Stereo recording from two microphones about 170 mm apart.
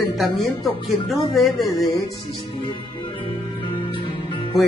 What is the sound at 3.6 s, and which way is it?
Music, 30° left (ahead or behind).